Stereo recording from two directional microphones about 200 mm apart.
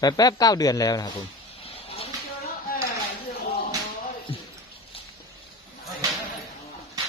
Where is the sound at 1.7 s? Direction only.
30° left (ahead or behind).